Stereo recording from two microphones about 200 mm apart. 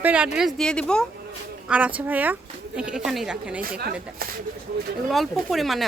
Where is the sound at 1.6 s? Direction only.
5° right (ahead or behind).